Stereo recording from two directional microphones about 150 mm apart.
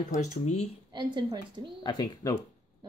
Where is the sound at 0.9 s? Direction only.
30° right (ahead or behind).